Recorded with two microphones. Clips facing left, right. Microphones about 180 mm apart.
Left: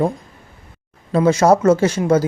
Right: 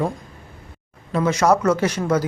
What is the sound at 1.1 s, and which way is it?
Speech, 30° left (ahead or behind).